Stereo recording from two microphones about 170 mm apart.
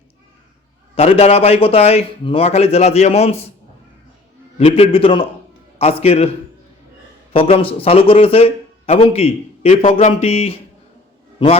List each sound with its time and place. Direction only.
0.9 s a man's voice: 40° left (ahead or behind)
4.5 s a man's voice: 35° left (ahead or behind)
7.3 s a man's voice: 35° left (ahead or behind)